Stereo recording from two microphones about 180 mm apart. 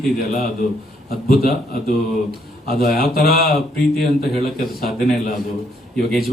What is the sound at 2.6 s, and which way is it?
Speech, 55° left (ahead or behind).